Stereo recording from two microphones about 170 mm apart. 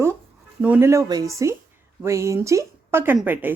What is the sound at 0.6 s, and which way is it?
Speech, 10° right (ahead or behind).